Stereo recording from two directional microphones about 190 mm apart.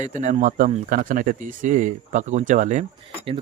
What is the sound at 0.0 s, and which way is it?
Speech, 40° right (ahead or behind).